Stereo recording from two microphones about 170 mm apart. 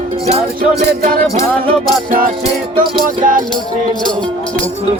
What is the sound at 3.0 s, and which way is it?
Music, 50° right (ahead or behind).